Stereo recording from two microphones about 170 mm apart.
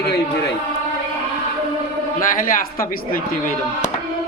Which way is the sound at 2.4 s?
55° left (ahead or behind).